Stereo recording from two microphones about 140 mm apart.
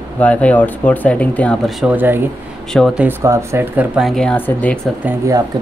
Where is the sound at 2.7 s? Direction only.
Centre (ahead or behind).